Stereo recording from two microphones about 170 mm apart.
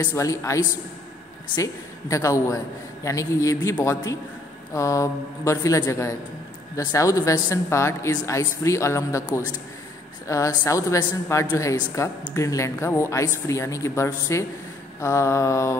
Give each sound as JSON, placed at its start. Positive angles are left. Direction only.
{"t": 0.0, "sound": "a man's voice", "side_deg": 15}